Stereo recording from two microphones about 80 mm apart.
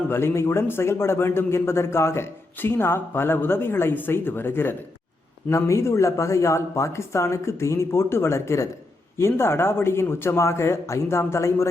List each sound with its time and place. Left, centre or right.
0.1 s a man's voice: left
5.5 s speech: left